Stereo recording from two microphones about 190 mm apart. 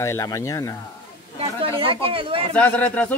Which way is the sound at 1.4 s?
30° right (ahead or behind).